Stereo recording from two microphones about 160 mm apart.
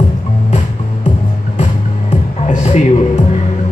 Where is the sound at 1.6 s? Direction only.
45° left (ahead or behind).